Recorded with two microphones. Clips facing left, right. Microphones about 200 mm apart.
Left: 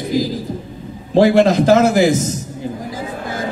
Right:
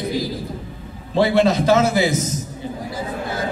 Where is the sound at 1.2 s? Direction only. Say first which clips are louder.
Left 5 dB; 45° left (ahead or behind).